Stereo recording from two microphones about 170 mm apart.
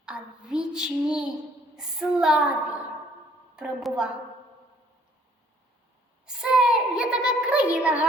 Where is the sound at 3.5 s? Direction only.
5° right (ahead or behind).